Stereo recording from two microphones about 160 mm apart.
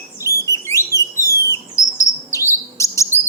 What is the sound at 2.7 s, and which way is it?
Chirp, 20° left (ahead or behind).